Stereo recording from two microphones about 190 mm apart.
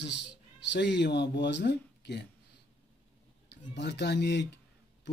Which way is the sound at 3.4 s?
65° left (ahead or behind).